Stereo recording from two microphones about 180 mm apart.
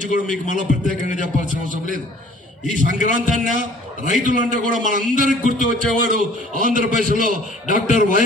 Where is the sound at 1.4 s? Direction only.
45° right (ahead or behind).